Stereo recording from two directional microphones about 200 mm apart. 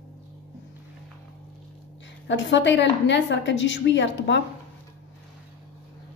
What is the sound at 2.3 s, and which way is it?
A woman's voice, 65° left (ahead or behind).